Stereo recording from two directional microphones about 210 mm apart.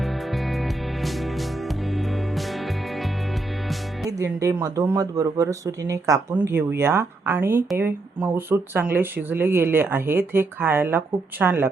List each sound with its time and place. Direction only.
0.0 s music: centre (ahead or behind)
4.2 s speech: 15° right (ahead or behind)